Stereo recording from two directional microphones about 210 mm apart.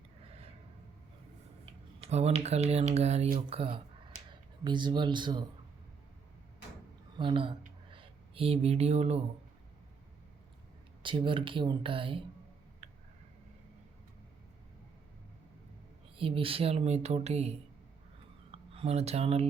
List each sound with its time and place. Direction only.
2.0 s speech: 30° right (ahead or behind)
7.2 s speech: 25° right (ahead or behind)
11.0 s speech: 25° right (ahead or behind)
12.8 s a sound: 35° right (ahead or behind)
16.1 s speech: 25° right (ahead or behind)
18.5 s speech: 25° right (ahead or behind)